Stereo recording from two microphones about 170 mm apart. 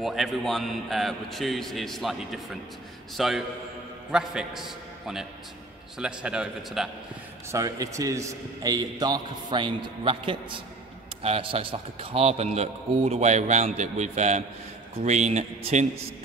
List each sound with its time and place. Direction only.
0.0 s a man's voice: centre (ahead or behind)
7.5 s a man's voice: 20° right (ahead or behind); by 15.9 s 45° right (ahead or behind)